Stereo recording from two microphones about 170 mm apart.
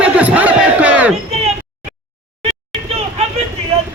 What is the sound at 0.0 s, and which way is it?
Crowd, 10° right (ahead or behind).